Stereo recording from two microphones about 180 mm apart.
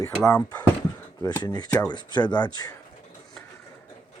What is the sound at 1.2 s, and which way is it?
Speech, 20° left (ahead or behind).